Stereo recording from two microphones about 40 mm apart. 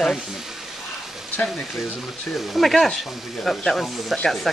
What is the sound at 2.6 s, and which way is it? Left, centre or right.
Speech, centre.